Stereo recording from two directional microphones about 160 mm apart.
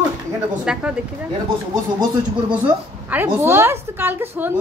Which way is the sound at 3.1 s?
15° right (ahead or behind).